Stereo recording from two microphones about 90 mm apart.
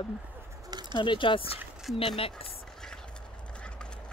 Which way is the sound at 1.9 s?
90° left.